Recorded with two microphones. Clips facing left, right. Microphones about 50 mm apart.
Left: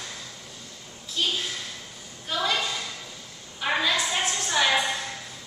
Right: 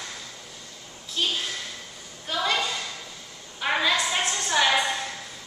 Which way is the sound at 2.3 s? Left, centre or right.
Centre.